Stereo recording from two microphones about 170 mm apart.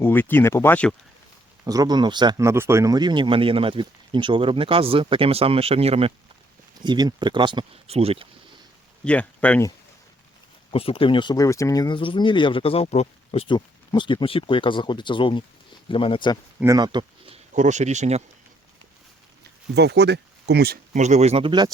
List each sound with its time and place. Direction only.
0.0 s speech: 10° left (ahead or behind)
1.6 s speech: 20° right (ahead or behind)
9.0 s speech: 5° left (ahead or behind)
10.7 s speech: 35° left (ahead or behind)
16.6 s speech: 20° right (ahead or behind)
17.5 s speech: 45° right (ahead or behind)
19.7 s speech: 80° right
20.9 s speech: 45° right (ahead or behind)